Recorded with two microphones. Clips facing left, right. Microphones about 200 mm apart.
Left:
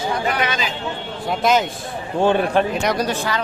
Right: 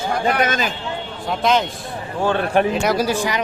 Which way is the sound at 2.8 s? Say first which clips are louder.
Right 2 dB; 5° right (ahead or behind).